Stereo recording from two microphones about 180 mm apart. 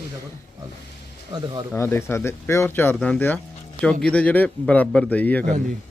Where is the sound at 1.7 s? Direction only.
15° left (ahead or behind).